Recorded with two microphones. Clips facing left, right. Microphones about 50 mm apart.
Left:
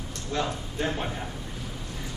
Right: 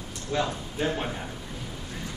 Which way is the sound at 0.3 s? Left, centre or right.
Centre.